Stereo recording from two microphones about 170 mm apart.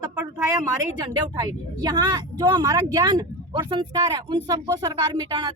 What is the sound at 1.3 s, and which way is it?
Speech, 25° right (ahead or behind).